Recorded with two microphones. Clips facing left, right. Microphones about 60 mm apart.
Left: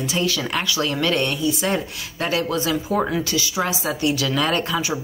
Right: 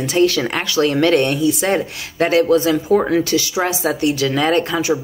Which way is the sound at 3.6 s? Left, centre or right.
Right.